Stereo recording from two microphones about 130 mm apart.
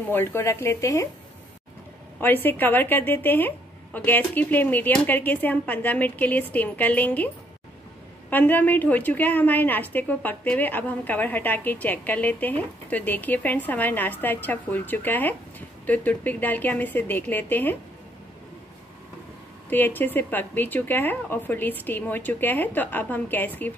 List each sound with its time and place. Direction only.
0.1 s speech: 20° left (ahead or behind)
2.1 s a woman's voice: 15° left (ahead or behind)
8.3 s a woman's voice: 15° left (ahead or behind)
19.7 s a woman's voice: 15° left (ahead or behind)